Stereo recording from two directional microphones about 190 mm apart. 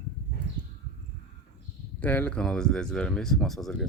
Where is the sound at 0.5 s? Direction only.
35° right (ahead or behind).